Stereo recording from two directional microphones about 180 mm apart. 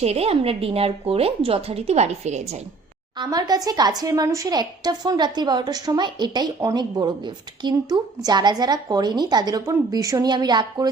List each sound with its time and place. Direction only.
0.0 s a woman's voice: 35° right (ahead or behind)
3.2 s a woman's voice: 20° right (ahead or behind)